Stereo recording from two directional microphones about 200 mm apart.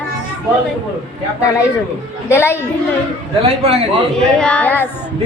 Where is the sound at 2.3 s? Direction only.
10° left (ahead or behind).